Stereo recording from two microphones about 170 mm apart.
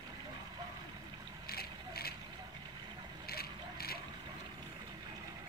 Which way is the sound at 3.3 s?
65° left (ahead or behind).